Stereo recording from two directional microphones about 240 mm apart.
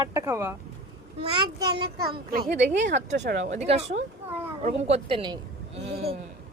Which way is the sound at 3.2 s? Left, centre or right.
Right.